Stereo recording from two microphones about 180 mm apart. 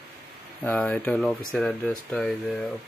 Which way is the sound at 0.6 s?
10° left (ahead or behind).